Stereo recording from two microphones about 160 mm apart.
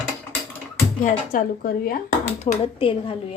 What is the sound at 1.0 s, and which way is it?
Speech, 60° left (ahead or behind).